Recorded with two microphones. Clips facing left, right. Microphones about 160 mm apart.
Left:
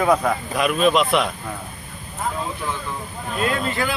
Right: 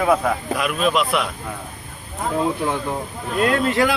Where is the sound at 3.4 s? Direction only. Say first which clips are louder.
Right 5 dB; 75° right (ahead or behind).